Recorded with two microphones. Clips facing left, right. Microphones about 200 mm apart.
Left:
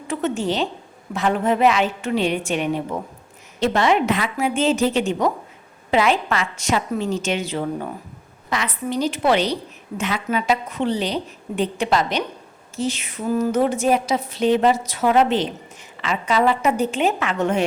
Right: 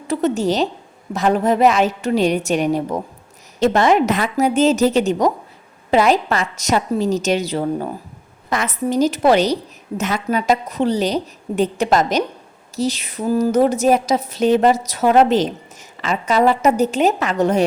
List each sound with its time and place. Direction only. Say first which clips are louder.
0.1 s a woman's voice: right 5 dB; 40° right (ahead or behind)